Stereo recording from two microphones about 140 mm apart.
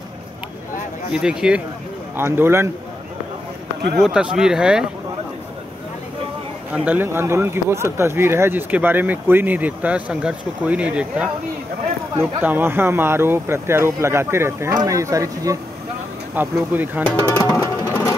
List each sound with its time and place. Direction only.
1.1 s speech: 5° right (ahead or behind)
2.1 s speech: 15° right (ahead or behind)
4.0 s speech: 5° right (ahead or behind)
6.7 s speech: 10° right (ahead or behind)
16.3 s speech: 15° right (ahead or behind)
17.4 s music: 20° left (ahead or behind)